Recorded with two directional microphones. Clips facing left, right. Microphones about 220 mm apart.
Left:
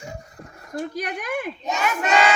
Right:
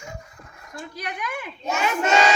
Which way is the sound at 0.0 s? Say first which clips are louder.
Left 3 dB; 35° left (ahead or behind).